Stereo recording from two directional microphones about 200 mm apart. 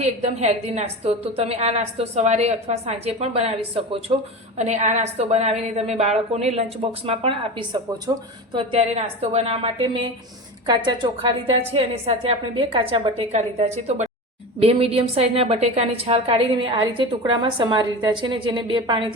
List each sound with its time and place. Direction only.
0.0 s a woman's voice: 35° right (ahead or behind)